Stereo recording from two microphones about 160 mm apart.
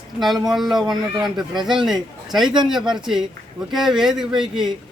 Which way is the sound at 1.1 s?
25° right (ahead or behind).